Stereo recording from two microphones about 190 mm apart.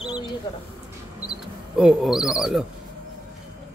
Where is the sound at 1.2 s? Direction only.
5° right (ahead or behind).